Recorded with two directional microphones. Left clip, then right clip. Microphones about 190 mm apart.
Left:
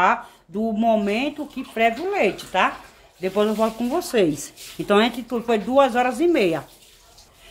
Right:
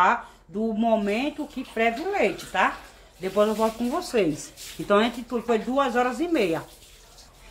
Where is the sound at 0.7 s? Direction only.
40° left (ahead or behind).